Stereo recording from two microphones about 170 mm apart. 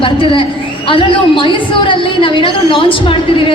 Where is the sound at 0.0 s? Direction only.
30° left (ahead or behind).